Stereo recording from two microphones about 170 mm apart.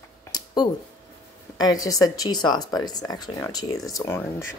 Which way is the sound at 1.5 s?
20° left (ahead or behind).